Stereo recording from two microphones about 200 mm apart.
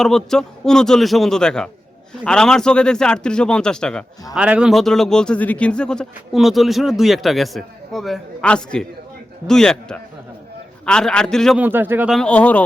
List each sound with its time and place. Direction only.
0.0 s speech: centre (ahead or behind)
11.6 s speech: 10° right (ahead or behind); by 12.6 s 5° left (ahead or behind)